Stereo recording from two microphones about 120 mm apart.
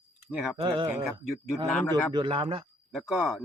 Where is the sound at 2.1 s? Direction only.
45° right (ahead or behind).